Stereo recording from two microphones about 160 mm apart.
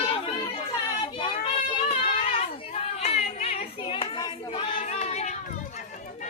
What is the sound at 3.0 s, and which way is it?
Hands, 45° left (ahead or behind).